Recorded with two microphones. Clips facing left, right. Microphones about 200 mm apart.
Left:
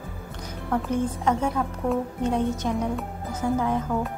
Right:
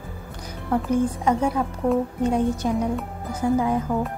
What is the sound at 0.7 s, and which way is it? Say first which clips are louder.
A woman's voice: right 4 dB; 10° right (ahead or behind).